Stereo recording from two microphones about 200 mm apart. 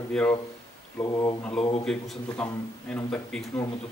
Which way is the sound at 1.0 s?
15° left (ahead or behind).